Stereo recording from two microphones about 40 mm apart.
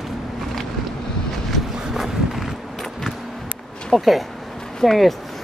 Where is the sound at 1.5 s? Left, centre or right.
Centre.